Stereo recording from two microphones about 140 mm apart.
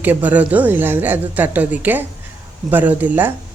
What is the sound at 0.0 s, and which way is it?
Speech, 10° right (ahead or behind).